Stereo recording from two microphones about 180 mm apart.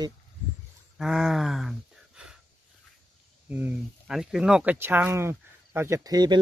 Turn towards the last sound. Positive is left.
turn(degrees=-20)  # may be behind; listen again after turning